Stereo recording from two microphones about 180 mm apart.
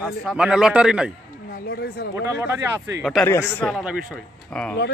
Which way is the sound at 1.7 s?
65° left (ahead or behind).